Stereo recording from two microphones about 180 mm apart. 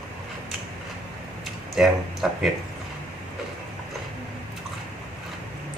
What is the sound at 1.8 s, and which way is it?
Speech, centre (ahead or behind).